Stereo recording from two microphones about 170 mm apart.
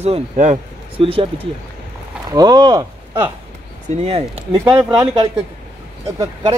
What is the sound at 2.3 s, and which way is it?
Speech, 25° right (ahead or behind).